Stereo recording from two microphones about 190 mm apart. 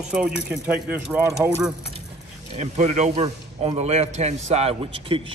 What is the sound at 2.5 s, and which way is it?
A man's voice, 35° right (ahead or behind).